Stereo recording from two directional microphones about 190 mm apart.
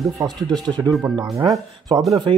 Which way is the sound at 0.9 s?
Centre (ahead or behind).